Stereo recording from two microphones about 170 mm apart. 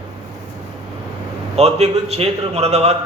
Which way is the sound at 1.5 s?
40° right (ahead or behind).